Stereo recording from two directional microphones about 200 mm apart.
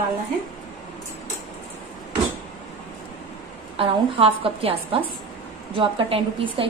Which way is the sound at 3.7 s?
30° right (ahead or behind).